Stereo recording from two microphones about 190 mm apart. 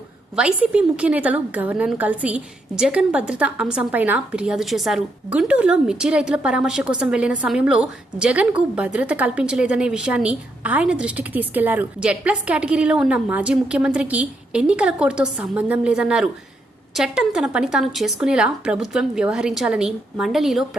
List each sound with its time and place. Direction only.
0.3 s a woman's voice: 5° right (ahead or behind)